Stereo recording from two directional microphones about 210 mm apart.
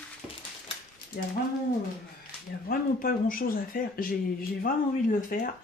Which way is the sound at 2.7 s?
40° left (ahead or behind).